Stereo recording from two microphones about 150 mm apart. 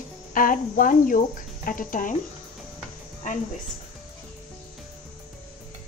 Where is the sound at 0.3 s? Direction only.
65° left (ahead or behind).